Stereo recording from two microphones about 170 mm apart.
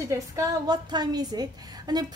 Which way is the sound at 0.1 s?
20° right (ahead or behind).